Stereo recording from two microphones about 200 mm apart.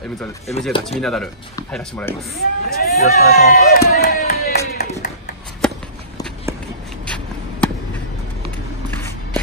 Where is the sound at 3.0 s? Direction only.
35° left (ahead or behind).